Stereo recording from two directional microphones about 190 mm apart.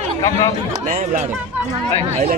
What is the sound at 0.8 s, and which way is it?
Speech, 40° right (ahead or behind).